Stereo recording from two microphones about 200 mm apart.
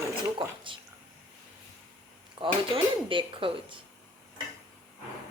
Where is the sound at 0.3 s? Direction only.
25° right (ahead or behind).